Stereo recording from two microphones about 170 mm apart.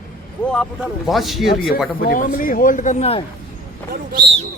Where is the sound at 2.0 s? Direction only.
55° left (ahead or behind); by 3.3 s 35° left (ahead or behind).